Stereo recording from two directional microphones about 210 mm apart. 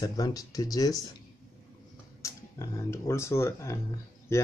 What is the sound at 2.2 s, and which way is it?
Speech, 15° left (ahead or behind).